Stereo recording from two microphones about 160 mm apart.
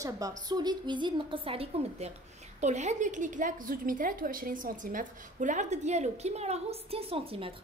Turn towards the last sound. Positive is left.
turn(degrees=-35)  # may be behind; listen again after turning